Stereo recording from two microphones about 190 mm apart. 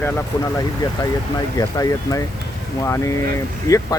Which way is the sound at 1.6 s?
20° left (ahead or behind).